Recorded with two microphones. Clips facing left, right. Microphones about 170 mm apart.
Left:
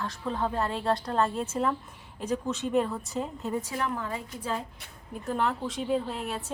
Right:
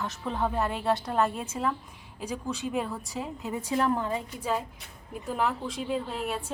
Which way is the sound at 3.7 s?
30° right (ahead or behind).